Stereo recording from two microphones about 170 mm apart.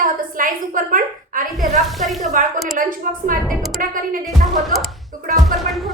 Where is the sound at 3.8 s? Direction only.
55° right (ahead or behind).